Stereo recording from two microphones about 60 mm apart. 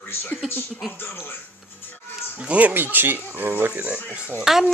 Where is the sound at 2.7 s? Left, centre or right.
Right.